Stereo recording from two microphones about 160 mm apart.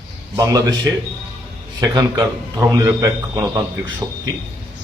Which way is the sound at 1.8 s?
25° right (ahead or behind).